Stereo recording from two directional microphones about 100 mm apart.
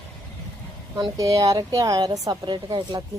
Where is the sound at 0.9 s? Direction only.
35° right (ahead or behind).